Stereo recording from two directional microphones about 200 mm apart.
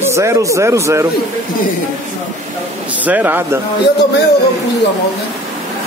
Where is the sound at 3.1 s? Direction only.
10° right (ahead or behind).